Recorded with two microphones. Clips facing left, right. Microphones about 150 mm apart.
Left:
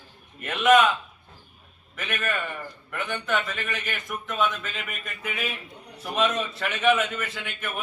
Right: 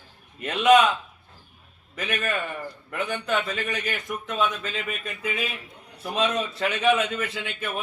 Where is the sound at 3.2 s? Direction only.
30° right (ahead or behind).